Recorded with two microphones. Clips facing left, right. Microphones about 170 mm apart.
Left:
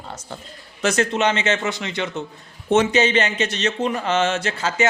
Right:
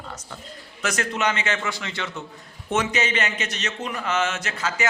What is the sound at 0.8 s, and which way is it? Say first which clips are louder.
Speech: left 6 dB; 25° left (ahead or behind).